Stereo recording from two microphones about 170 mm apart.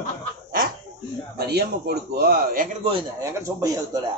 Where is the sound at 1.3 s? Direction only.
70° right (ahead or behind).